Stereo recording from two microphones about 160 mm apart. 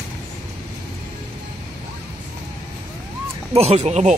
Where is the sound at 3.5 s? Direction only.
45° right (ahead or behind).